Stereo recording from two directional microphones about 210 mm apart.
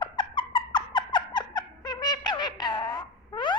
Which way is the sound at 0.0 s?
25° left (ahead or behind).